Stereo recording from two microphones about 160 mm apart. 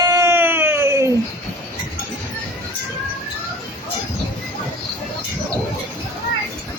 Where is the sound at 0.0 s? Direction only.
20° right (ahead or behind).